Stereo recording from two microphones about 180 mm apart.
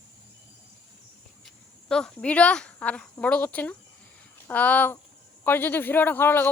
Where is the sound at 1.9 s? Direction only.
5° left (ahead or behind).